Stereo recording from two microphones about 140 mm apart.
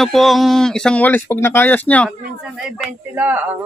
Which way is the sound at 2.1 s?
5° right (ahead or behind).